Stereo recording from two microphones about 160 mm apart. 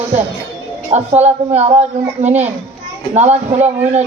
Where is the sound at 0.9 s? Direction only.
45° right (ahead or behind).